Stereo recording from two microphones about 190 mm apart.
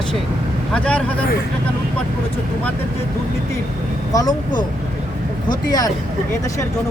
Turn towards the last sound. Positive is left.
turn(degrees=20)  # may be behind; listen again after turning